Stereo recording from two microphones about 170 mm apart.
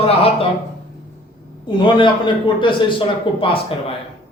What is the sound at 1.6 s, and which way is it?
A man's voice, 30° left (ahead or behind).